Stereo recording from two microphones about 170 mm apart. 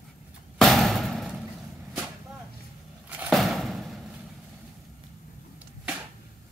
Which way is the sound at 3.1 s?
5° right (ahead or behind).